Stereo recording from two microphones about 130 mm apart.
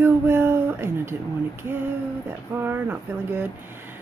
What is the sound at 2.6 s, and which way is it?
Speech, 15° right (ahead or behind).